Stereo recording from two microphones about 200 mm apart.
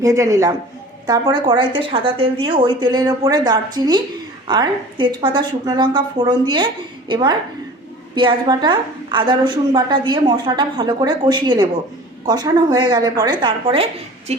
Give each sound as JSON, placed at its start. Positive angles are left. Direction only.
{"t": 0.0, "sound": "a woman's voice", "side_deg": -15}